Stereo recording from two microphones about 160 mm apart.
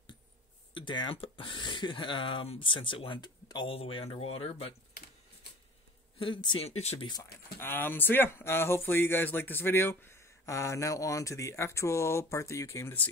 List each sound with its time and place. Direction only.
0.7 s speech: 30° left (ahead or behind)
6.1 s speech: 30° left (ahead or behind)
7.5 s speech: 15° left (ahead or behind)